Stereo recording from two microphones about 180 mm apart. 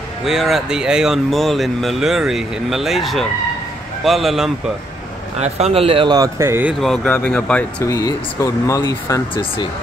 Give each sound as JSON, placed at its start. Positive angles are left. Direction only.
{"t": 0.2, "sound": "speech", "side_deg": 0}
{"t": 5.4, "sound": "speech", "side_deg": -35}
{"t": 6.8, "sound": "speech", "side_deg": 5}
{"t": 7.9, "sound": "speech", "side_deg": 15}
{"t": 9.3, "sound": "speech", "side_deg": 30}